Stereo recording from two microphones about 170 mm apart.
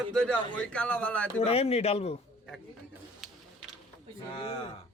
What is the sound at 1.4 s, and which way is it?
Speech, 35° left (ahead or behind).